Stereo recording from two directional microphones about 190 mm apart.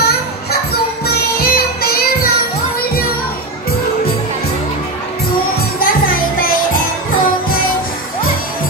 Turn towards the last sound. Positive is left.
turn(degrees=50)  # may be behind; listen again after turning